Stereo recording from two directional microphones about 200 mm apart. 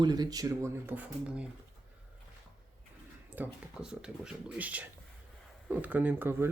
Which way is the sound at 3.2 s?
10° right (ahead or behind).